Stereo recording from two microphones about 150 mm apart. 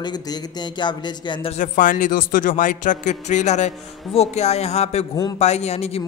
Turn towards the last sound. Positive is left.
turn(degrees=45)  # may be behind; listen again after turning